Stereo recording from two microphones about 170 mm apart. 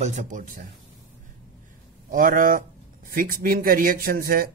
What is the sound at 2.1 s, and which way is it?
Speech, 55° right (ahead or behind).